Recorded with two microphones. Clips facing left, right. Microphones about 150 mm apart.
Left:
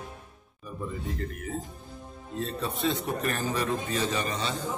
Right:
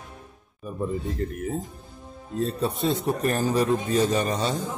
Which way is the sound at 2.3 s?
40° right (ahead or behind).